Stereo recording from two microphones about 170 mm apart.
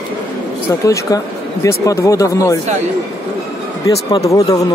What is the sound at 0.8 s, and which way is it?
Speech, 20° left (ahead or behind).